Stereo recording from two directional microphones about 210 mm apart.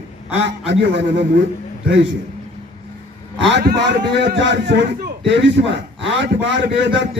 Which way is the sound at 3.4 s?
55° right (ahead or behind).